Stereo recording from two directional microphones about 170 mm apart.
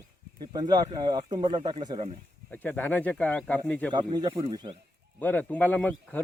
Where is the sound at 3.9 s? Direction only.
25° right (ahead or behind).